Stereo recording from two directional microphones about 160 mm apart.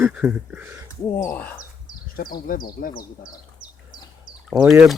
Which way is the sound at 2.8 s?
70° left (ahead or behind).